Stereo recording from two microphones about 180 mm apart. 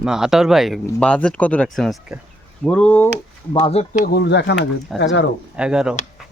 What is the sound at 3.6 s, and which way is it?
Speech, 35° left (ahead or behind).